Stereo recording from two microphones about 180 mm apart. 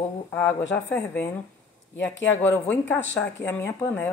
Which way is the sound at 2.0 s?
90° left.